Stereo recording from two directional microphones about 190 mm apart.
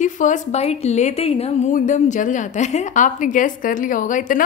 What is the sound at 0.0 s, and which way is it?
A woman's voice, 40° left (ahead or behind).